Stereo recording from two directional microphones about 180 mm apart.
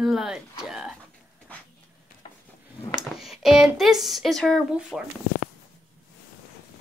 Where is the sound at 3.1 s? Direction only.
Centre (ahead or behind).